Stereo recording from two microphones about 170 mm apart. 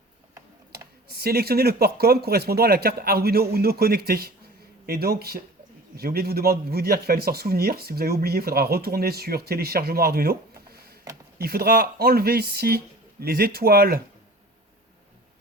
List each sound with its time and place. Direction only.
1.1 s speech: 65° right (ahead or behind)